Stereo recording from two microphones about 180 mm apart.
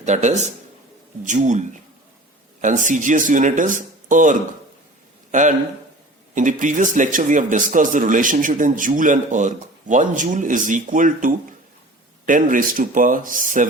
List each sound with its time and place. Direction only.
0.0 s a man's voice: 40° right (ahead or behind)